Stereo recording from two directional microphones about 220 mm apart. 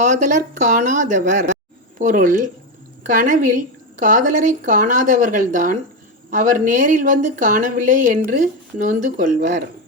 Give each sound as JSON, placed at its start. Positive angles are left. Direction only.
{"t": 0.0, "sound": "a woman's voice", "side_deg": -35}